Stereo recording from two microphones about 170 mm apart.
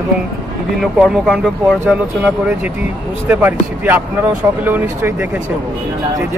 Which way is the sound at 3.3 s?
10° right (ahead or behind).